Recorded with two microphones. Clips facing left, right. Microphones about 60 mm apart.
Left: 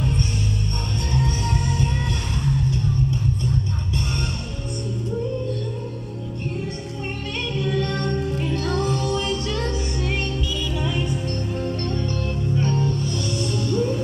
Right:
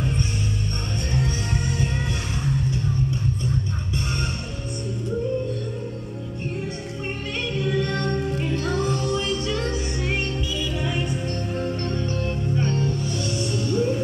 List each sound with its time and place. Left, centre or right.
8.5 s music: centre
13.1 s music: centre